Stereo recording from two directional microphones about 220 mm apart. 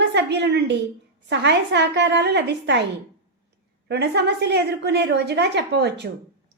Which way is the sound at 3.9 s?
50° right (ahead or behind).